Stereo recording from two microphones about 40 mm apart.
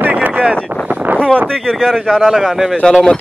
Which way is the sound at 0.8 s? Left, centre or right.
Right.